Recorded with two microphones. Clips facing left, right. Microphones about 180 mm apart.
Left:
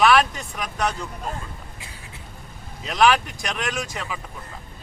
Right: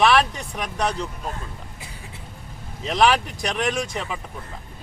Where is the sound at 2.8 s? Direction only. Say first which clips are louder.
Even; 30° right (ahead or behind).